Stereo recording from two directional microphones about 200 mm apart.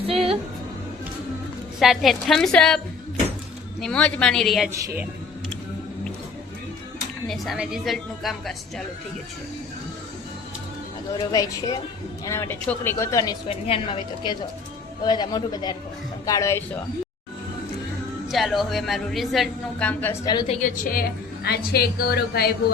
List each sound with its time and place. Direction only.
0.0 s music: 30° right (ahead or behind)
1.8 s a woman's voice: centre (ahead or behind)
4.7 s a woman's voice: 15° right (ahead or behind)
7.3 s a woman's voice: centre (ahead or behind)
11.2 s a woman's voice: 20° left (ahead or behind)
13.7 s a woman's voice: 30° left (ahead or behind)
18.3 s a woman's voice: centre (ahead or behind)
20.3 s a woman's voice: 20° left (ahead or behind)
20.6 s a woman's voice: 40° left (ahead or behind)